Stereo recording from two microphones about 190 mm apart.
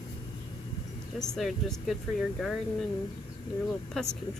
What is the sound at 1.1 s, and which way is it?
Speech, centre (ahead or behind).